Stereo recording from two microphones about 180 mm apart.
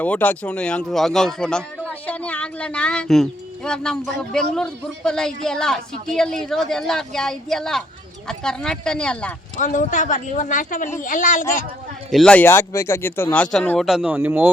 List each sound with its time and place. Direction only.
0.0 s speech: 10° left (ahead or behind)
9.6 s speech: 45° left (ahead or behind)
12.1 s speech: 5° left (ahead or behind); by 14.5 s 10° right (ahead or behind)